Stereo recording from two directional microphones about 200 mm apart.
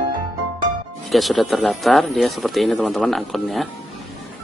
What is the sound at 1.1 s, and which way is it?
Speech, centre (ahead or behind).